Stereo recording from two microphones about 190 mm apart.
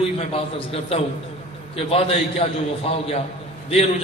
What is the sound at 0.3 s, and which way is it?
A man's voice, 30° left (ahead or behind).